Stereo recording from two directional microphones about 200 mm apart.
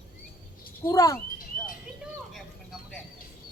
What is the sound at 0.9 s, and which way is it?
Speech, 15° left (ahead or behind).